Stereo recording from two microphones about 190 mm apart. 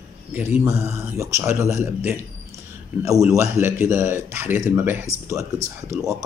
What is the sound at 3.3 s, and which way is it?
Speech, 15° right (ahead or behind).